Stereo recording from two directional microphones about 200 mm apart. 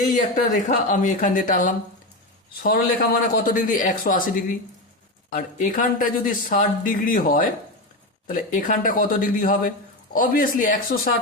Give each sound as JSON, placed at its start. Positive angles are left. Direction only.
{"t": 0.1, "sound": "a man's voice", "side_deg": 40}